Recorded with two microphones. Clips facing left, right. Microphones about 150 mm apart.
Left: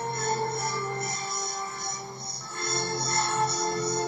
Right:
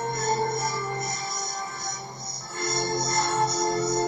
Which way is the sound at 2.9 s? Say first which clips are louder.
Right 3 dB; 20° right (ahead or behind).